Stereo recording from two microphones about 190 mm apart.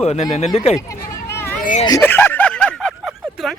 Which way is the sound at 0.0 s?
35° left (ahead or behind).